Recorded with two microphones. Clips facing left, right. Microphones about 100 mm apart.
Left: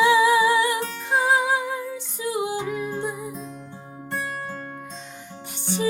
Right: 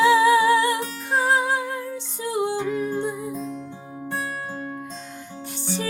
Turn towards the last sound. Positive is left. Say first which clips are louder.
# left 2 dB
turn(degrees=15)  # may be behind; listen again after turning